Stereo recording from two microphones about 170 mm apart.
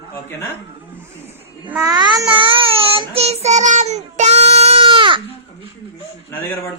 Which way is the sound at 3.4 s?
45° right (ahead or behind).